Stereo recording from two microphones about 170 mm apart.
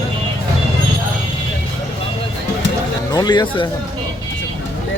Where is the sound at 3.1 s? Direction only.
25° left (ahead or behind).